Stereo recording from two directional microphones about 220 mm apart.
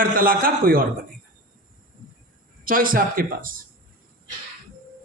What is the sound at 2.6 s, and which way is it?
A man's voice, 40° right (ahead or behind).